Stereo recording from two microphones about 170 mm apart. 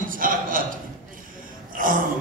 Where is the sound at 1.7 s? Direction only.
55° right (ahead or behind).